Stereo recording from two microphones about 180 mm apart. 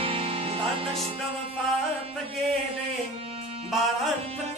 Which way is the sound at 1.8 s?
Centre (ahead or behind).